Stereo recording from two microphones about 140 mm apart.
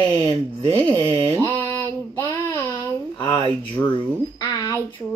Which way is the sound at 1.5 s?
15° left (ahead or behind).